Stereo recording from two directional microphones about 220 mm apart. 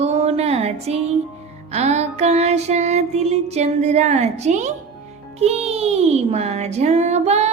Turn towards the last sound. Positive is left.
turn(degrees=-30)  # may be behind; listen again after turning